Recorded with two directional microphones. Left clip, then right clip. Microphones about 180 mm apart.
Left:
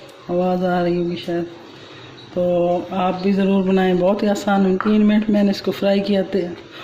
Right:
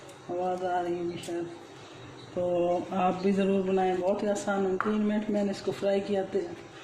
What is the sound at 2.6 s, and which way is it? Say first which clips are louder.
Mantra: left 8 dB; 5° left (ahead or behind).